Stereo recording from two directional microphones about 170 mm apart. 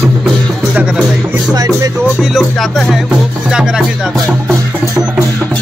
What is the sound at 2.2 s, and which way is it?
Music, centre (ahead or behind).